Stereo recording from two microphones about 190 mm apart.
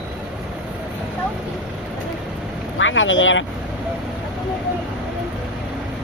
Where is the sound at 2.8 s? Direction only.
90° left.